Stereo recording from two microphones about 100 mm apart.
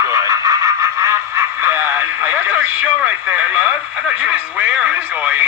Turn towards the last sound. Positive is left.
turn(degrees=-15)  # may be behind; listen again after turning